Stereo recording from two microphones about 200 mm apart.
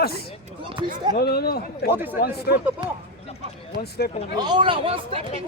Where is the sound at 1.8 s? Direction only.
10° right (ahead or behind).